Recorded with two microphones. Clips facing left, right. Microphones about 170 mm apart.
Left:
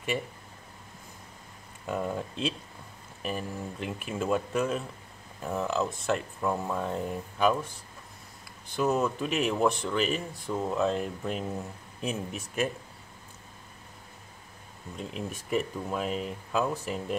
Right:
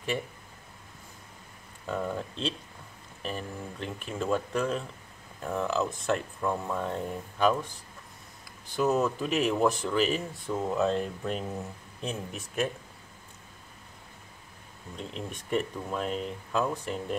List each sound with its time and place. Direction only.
1.9 s speech: 10° left (ahead or behind)
15.0 s speech: 5° left (ahead or behind)